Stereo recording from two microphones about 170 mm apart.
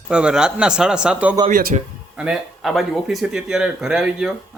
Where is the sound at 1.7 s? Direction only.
40° right (ahead or behind).